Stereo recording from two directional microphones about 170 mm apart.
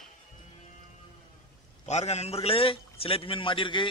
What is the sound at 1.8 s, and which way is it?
A man's voice, 40° left (ahead or behind).